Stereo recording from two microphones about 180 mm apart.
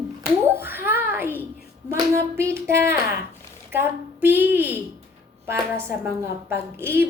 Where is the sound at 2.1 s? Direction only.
15° right (ahead or behind).